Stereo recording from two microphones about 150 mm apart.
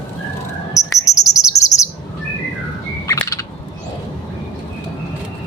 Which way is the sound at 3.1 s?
20° left (ahead or behind).